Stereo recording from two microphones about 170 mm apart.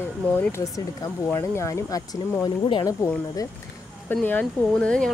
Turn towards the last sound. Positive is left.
turn(degrees=5)  # may be behind; listen again after turning